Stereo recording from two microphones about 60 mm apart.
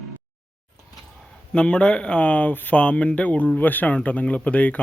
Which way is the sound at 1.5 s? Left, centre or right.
Centre.